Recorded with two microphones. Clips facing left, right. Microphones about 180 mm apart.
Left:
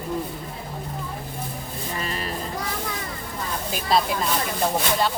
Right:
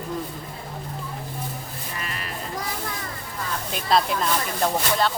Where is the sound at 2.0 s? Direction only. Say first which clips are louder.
Left 5 dB; 30° left (ahead or behind).